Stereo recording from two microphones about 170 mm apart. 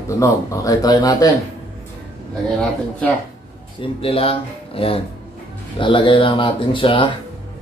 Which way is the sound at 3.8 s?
35° left (ahead or behind).